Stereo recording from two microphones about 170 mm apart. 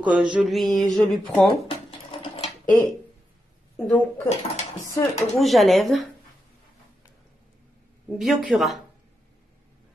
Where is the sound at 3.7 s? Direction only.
10° left (ahead or behind).